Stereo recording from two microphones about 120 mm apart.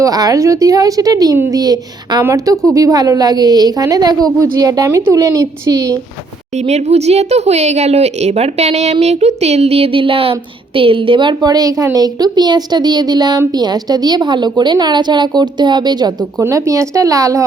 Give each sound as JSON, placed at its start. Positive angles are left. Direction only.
{"t": 0.0, "sound": "a woman's voice", "side_deg": -30}
{"t": 6.7, "sound": "a woman's voice", "side_deg": -70}
{"t": 16.4, "sound": "a woman's voice", "side_deg": -25}